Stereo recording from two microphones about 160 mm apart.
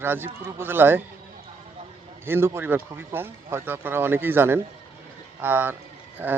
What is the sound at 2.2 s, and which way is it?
Speech, 15° right (ahead or behind).